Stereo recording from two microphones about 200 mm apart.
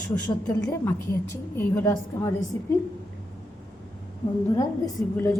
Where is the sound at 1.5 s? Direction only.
10° left (ahead or behind).